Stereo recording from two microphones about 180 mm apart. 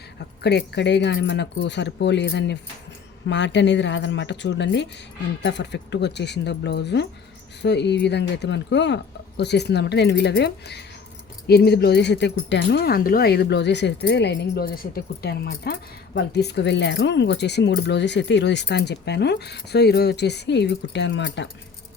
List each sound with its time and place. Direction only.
0.2 s speech: 65° left (ahead or behind)